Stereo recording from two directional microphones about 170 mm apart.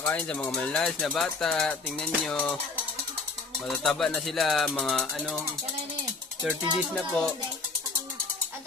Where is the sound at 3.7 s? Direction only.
5° left (ahead or behind).